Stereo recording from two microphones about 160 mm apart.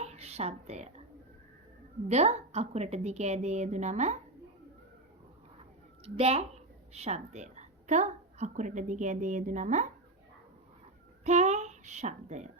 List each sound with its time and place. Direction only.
0.0 s a sound: 40° right (ahead or behind)
2.0 s a woman's voice: 45° right (ahead or behind)
6.1 s a woman's voice: 40° right (ahead or behind)
11.2 s a child's voice: 45° right (ahead or behind)